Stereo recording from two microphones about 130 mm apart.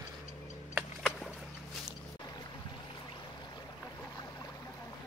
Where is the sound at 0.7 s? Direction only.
Centre (ahead or behind).